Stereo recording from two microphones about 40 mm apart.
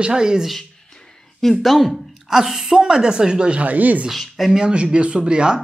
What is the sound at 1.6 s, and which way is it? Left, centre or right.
Speech, centre.